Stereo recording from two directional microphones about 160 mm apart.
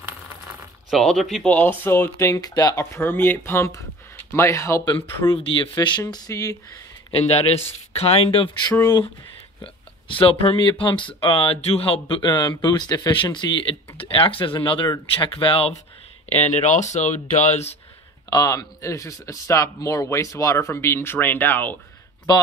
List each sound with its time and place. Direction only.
0.8 s speech: centre (ahead or behind); by 5.3 s 20° left (ahead or behind)
5.3 s speech: 35° left (ahead or behind)
7.1 s speech: 40° left (ahead or behind)
8.6 s speech: 20° left (ahead or behind)
9.6 s speech: 35° left (ahead or behind)
18.3 s speech: 25° left (ahead or behind)